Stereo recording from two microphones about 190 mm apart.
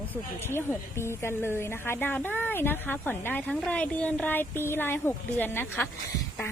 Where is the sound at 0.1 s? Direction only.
10° left (ahead or behind).